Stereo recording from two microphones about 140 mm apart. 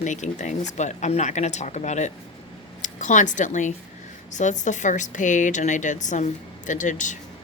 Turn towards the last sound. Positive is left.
turn(degrees=65)  # may be behind; listen again after turning